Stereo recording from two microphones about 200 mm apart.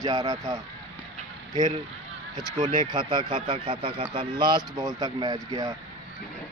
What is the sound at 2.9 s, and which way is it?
Speech, 25° right (ahead or behind).